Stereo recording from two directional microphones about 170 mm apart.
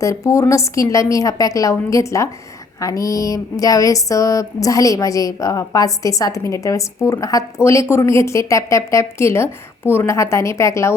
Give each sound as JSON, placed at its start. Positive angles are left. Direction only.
{"t": 0.0, "sound": "speech", "side_deg": 20}